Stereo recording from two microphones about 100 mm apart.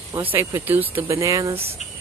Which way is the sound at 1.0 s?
30° right (ahead or behind).